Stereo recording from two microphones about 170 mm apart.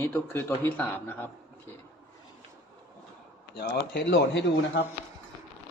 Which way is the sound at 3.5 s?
70° left (ahead or behind).